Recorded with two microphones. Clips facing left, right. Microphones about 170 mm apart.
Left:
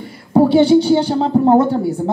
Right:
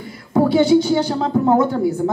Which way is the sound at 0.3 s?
30° left (ahead or behind).